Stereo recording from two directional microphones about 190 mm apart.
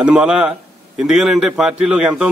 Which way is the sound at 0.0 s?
5° right (ahead or behind).